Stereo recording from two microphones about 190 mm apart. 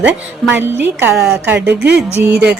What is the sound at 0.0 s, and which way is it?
A woman's voice, 10° right (ahead or behind).